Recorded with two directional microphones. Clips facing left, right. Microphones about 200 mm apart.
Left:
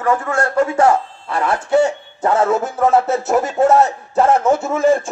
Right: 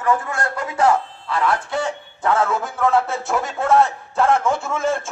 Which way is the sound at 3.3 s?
40° left (ahead or behind).